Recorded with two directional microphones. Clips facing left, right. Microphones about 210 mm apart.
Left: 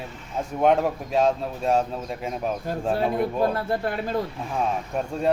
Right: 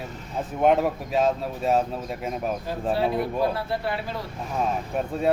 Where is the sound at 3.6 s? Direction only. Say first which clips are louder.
Left 2 dB; 50° left (ahead or behind).